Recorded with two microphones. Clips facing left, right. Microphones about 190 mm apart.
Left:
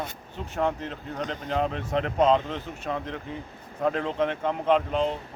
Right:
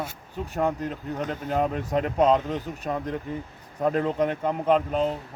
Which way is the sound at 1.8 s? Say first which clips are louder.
Right 2 dB; 45° right (ahead or behind).